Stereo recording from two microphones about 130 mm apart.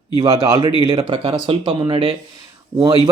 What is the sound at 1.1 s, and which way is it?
Speech, 45° right (ahead or behind).